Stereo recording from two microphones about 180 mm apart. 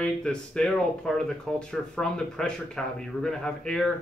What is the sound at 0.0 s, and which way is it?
Speech, 5° left (ahead or behind).